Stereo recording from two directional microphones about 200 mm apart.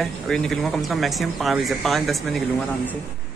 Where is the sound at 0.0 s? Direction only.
Centre (ahead or behind).